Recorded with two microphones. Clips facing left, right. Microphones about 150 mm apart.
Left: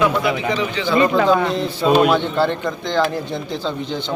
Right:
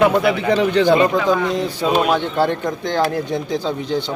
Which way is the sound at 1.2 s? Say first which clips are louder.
Left 2 dB; 60° left (ahead or behind).